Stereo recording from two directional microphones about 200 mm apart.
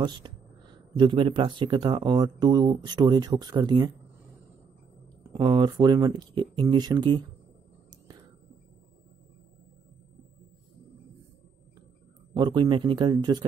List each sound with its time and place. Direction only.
0.0 s speech: 20° right (ahead or behind)
5.3 s speech: 20° right (ahead or behind)
12.4 s speech: 25° right (ahead or behind)